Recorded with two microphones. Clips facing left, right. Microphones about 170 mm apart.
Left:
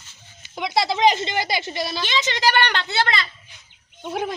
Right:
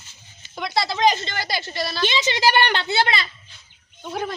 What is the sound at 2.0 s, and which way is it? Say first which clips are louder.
A woman's voice: right 3 dB; 15° right (ahead or behind).